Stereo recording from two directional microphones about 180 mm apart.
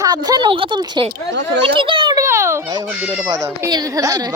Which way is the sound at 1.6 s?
30° right (ahead or behind).